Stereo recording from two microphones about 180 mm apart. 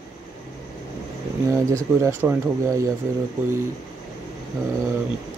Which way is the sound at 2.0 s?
10° right (ahead or behind).